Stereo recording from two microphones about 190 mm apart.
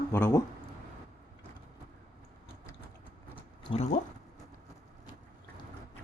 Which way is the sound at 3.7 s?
35° left (ahead or behind).